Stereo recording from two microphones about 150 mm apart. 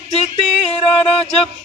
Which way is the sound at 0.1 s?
40° left (ahead or behind).